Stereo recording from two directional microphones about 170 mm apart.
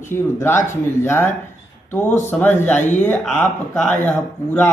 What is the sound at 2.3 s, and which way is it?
Speech, 10° left (ahead or behind).